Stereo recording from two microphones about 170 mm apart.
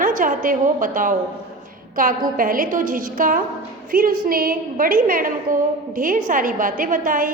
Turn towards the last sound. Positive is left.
turn(degrees=-55)  # may be behind; listen again after turning